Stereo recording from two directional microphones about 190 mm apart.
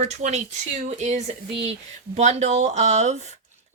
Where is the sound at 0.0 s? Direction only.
35° right (ahead or behind).